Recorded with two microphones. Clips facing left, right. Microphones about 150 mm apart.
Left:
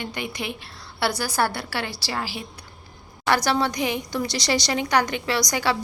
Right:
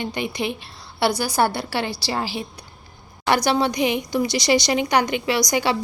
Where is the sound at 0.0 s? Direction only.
20° right (ahead or behind).